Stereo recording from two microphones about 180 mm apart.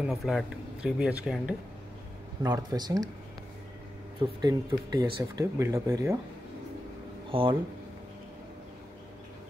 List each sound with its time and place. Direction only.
0.0 s speech: centre (ahead or behind)
2.4 s speech: 20° right (ahead or behind)
4.2 s speech: 25° right (ahead or behind)
7.2 s speech: 30° right (ahead or behind)